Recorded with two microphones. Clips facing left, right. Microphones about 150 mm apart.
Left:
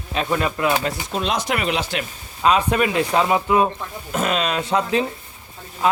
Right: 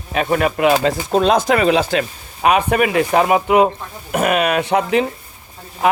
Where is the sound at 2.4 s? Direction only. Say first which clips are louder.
Right 3 dB; 65° right (ahead or behind).